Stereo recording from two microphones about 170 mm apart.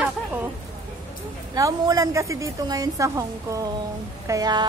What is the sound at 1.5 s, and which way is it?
A woman's voice, 20° right (ahead or behind).